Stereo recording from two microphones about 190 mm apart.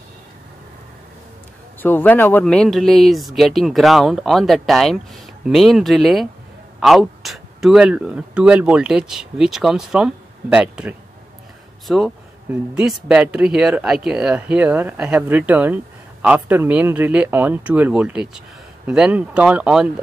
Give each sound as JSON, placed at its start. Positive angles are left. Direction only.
{"t": 1.8, "sound": "speech", "side_deg": 10}